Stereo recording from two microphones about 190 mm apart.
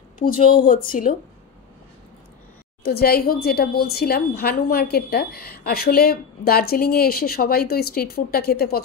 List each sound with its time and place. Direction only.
0.2 s speech: 45° left (ahead or behind)
2.8 s speech: 55° left (ahead or behind)